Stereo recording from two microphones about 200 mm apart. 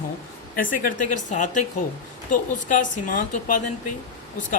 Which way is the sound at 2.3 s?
40° left (ahead or behind).